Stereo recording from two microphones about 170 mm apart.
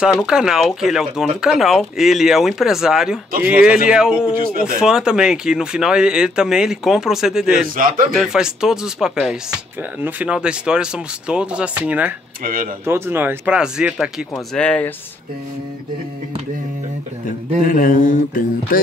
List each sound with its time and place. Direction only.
0.0 s speech: 5° right (ahead or behind)
7.6 s a man's voice: 55° right (ahead or behind)
8.1 s speech: centre (ahead or behind)
14.5 s speech: 5° left (ahead or behind)
17.6 s mantra: 55° left (ahead or behind)